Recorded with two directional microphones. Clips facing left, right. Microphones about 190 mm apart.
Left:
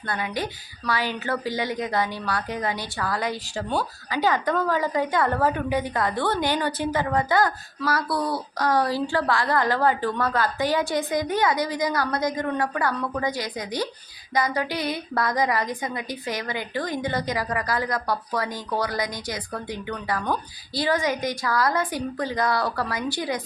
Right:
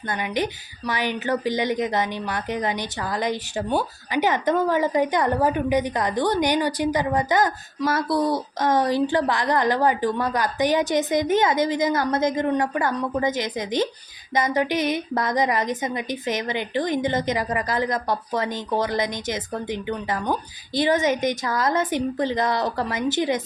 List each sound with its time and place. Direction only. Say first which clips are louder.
0.1 s a woman's voice: right 3 dB; 20° right (ahead or behind)